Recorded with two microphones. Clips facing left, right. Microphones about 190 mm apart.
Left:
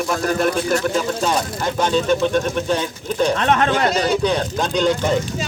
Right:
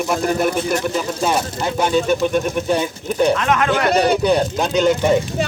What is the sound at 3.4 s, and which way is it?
Speech, 30° left (ahead or behind).